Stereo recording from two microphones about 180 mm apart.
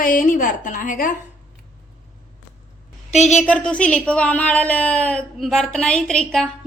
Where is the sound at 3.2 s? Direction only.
5° left (ahead or behind).